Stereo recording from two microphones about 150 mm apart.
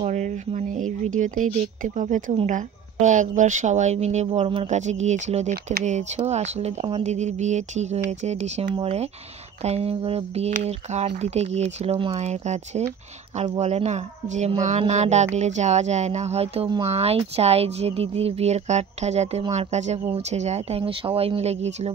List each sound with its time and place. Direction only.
0.0 s speech: 50° right (ahead or behind)
5.5 s speech: 60° right (ahead or behind)